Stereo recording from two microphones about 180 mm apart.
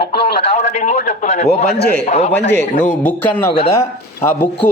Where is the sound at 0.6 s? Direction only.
40° left (ahead or behind).